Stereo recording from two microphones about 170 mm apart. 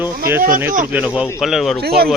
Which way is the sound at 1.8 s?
65° right (ahead or behind).